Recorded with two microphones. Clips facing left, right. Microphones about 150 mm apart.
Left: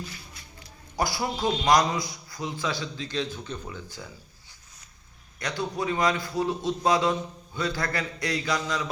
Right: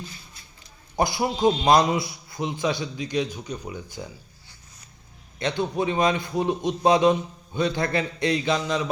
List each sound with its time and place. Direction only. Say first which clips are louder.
0.9 s a man's voice: right 4 dB; 20° right (ahead or behind)
5.4 s a man's voice: right 5 dB; 25° right (ahead or behind)